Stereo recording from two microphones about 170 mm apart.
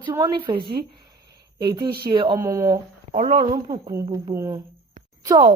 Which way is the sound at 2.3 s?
20° right (ahead or behind).